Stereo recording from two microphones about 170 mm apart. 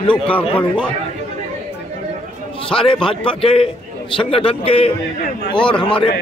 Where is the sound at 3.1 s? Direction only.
35° left (ahead or behind).